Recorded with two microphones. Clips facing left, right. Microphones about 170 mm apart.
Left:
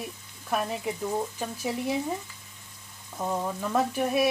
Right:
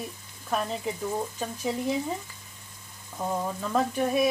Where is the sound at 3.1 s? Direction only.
5° left (ahead or behind).